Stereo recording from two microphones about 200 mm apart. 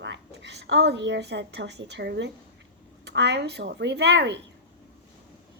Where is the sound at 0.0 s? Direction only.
60° right (ahead or behind).